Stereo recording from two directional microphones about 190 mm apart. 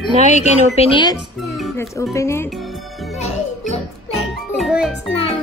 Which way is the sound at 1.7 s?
15° left (ahead or behind).